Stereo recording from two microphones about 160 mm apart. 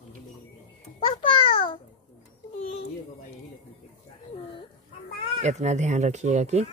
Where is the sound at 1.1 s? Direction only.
35° left (ahead or behind).